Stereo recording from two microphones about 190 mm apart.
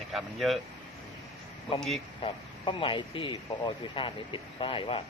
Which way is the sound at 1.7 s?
Centre (ahead or behind).